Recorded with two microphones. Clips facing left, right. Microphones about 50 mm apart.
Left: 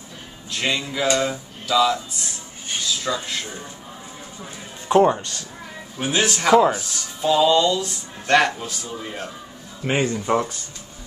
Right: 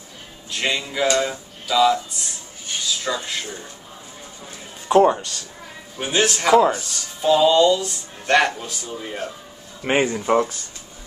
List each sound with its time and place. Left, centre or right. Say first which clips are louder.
0.5 s speech: even; centre
4.8 s speech: right 1 dB; centre
9.8 s speech: right 3 dB; right
10.0 s speech: right 2 dB; centre